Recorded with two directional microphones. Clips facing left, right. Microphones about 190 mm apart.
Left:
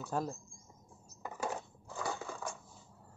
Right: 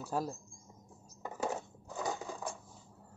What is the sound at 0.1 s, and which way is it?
Speech, 5° right (ahead or behind).